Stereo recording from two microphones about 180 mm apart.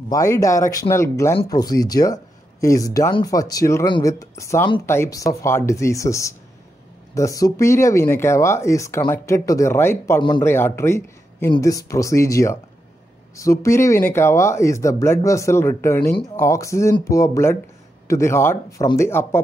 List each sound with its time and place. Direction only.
0.1 s a man's voice: 15° left (ahead or behind)